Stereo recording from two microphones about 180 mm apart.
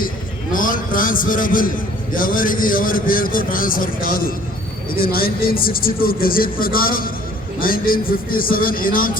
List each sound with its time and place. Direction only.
0.5 s speech: 50° left (ahead or behind)